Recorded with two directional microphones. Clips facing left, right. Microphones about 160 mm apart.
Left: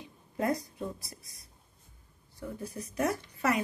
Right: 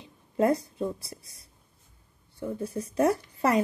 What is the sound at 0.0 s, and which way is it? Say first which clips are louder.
Speech: right 7 dB; 30° right (ahead or behind).